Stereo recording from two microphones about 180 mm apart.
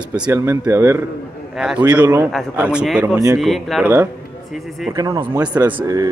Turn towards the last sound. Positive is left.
turn(degrees=-20)  # may be behind; listen again after turning